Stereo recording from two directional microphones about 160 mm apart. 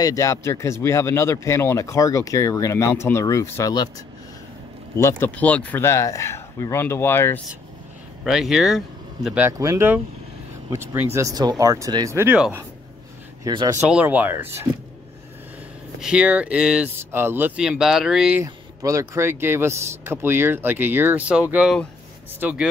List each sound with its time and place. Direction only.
0.0 s speech: 20° left (ahead or behind)
4.9 s speech: 15° left (ahead or behind)
8.2 s speech: 5° right (ahead or behind)
9.5 s speech: 20° right (ahead or behind)
13.4 s speech: 30° right (ahead or behind)
13.8 s speech: 10° right (ahead or behind)
16.0 s speech: 5° right (ahead or behind)
18.4 s speech: 20° right (ahead or behind)